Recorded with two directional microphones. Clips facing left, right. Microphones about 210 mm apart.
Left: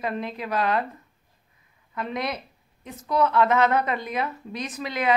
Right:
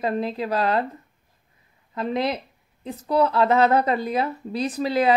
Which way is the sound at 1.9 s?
30° right (ahead or behind).